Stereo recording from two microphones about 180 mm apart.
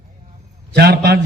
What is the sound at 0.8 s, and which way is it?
Speech, 65° right (ahead or behind).